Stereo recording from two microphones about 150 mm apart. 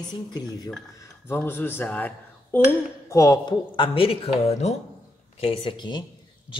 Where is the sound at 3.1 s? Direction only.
20° left (ahead or behind).